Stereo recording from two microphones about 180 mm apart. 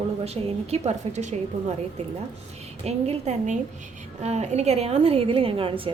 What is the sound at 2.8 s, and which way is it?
A woman's voice, 35° right (ahead or behind).